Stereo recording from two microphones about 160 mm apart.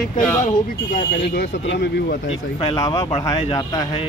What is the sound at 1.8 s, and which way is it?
Speech, 90° left.